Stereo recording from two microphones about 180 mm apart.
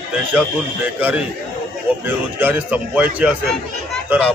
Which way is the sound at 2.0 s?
10° right (ahead or behind).